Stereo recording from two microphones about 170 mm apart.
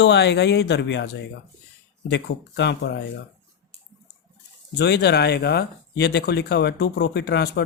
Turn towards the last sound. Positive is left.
turn(degrees=75)  # may be behind; listen again after turning